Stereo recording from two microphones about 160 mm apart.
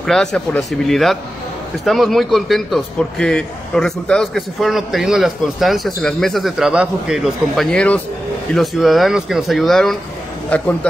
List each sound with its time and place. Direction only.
0.0 s a man's voice: 5° left (ahead or behind)